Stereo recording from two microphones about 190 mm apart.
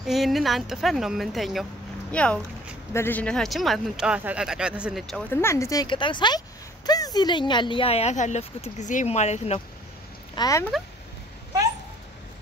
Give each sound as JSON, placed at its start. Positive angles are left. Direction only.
{"t": 0.0, "sound": "speech", "side_deg": 0}
{"t": 5.3, "sound": "speech", "side_deg": 15}
{"t": 10.3, "sound": "speech", "side_deg": 20}